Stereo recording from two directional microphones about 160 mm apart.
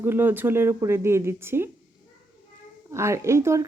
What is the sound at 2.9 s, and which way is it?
Speech, 20° right (ahead or behind).